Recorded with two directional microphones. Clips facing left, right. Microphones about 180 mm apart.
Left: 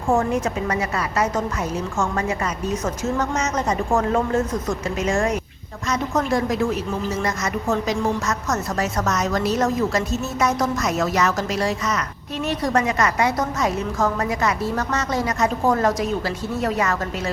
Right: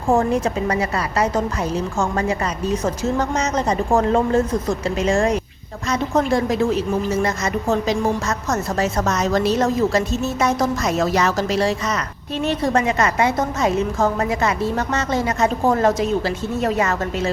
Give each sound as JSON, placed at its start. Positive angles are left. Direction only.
{"t": 0.1, "sound": "a woman's voice", "side_deg": -35}